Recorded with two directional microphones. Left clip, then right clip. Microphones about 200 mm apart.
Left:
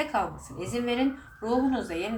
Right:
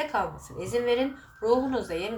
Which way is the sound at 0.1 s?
10° right (ahead or behind).